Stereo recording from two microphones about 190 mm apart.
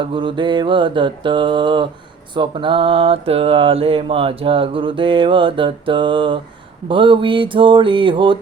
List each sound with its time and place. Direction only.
0.1 s mantra: 25° right (ahead or behind)